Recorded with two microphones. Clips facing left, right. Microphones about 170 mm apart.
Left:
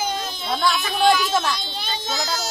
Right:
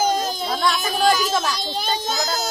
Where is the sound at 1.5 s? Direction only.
40° right (ahead or behind).